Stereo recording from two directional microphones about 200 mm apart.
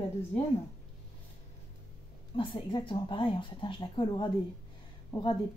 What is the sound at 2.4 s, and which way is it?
Speech, 25° left (ahead or behind).